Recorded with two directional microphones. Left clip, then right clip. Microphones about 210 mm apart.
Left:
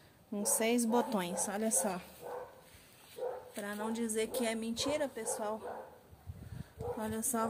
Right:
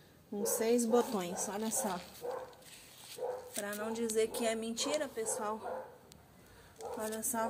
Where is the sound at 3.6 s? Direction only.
15° left (ahead or behind).